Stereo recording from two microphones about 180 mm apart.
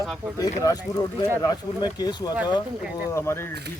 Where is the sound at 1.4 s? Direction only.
20° left (ahead or behind).